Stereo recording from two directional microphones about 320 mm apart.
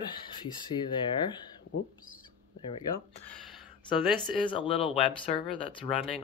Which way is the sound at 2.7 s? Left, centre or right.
Centre.